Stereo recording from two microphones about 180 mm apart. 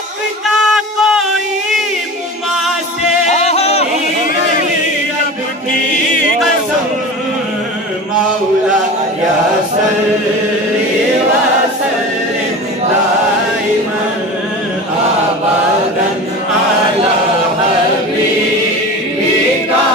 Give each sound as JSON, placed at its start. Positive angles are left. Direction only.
{"t": 0.7, "sound": "music", "side_deg": 0}
{"t": 3.3, "sound": "music", "side_deg": 35}